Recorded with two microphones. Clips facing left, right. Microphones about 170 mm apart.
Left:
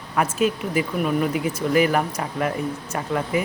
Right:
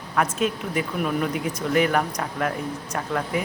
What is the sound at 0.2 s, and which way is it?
Speech, 5° left (ahead or behind).